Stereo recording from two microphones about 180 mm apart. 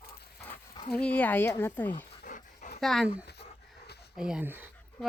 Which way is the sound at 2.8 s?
Centre (ahead or behind).